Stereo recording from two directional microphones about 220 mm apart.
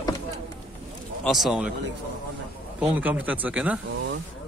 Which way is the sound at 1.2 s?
Centre (ahead or behind).